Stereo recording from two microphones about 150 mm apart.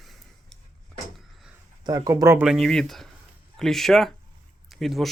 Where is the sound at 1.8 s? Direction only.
25° right (ahead or behind).